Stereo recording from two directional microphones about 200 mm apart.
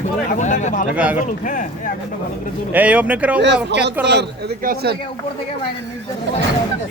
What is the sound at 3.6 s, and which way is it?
Speech, 60° right (ahead or behind).